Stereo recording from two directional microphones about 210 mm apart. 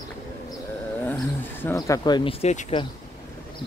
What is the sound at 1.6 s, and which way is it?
Speech, 15° left (ahead or behind).